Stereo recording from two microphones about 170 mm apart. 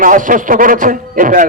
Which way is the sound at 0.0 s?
50° right (ahead or behind).